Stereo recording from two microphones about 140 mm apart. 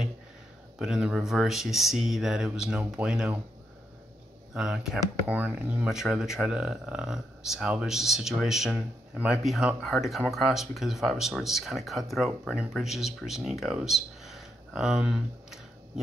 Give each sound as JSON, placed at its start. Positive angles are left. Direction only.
{"t": 0.7, "sound": "speech", "side_deg": -5}
{"t": 4.6, "sound": "speech", "side_deg": -5}